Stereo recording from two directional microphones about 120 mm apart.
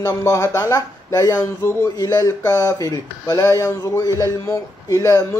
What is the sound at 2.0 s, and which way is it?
Speech, 30° left (ahead or behind).